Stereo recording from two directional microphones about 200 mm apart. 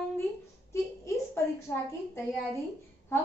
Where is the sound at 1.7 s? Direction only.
10° left (ahead or behind).